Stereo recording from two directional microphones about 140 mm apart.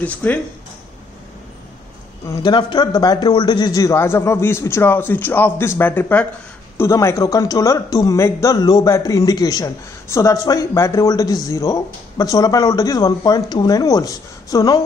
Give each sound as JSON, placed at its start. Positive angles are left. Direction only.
{"t": 0.0, "sound": "speech", "side_deg": 10}
{"t": 2.2, "sound": "speech", "side_deg": 30}